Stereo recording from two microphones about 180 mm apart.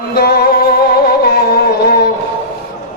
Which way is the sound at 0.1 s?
60° left (ahead or behind).